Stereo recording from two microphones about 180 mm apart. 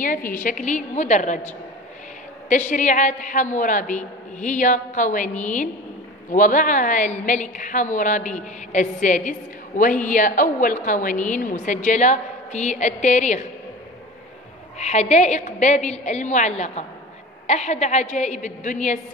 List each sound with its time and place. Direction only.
0.3 s a woman's voice: 45° left (ahead or behind)
2.5 s a woman's voice: 45° left (ahead or behind)
14.8 s a woman's voice: 40° left (ahead or behind)